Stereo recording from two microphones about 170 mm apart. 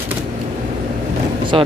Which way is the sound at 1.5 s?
30° right (ahead or behind).